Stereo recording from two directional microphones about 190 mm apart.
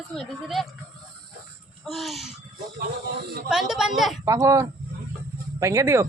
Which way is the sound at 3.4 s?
Centre (ahead or behind).